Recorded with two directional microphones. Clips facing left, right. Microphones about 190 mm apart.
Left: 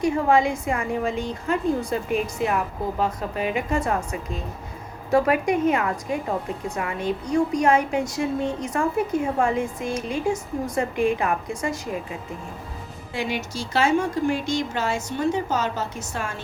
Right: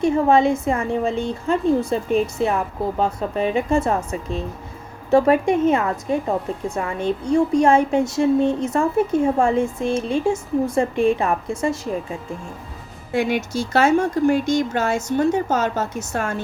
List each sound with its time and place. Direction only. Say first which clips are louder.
0.0 s a woman's voice: right 4 dB; 25° right (ahead or behind)
3.0 s a woman's voice: right 4 dB; 30° right (ahead or behind)
13.1 s a woman's voice: right 7 dB; 50° right (ahead or behind)